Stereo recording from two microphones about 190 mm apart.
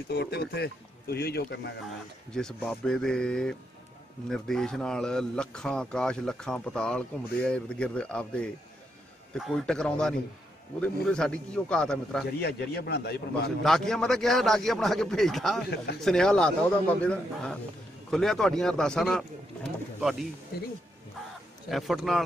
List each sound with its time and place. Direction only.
0.1 s a man's voice: 60° left (ahead or behind)
2.3 s speech: 5° left (ahead or behind)
12.4 s a man's voice: 60° left (ahead or behind)
13.7 s speech: centre (ahead or behind)
21.6 s speech: centre (ahead or behind)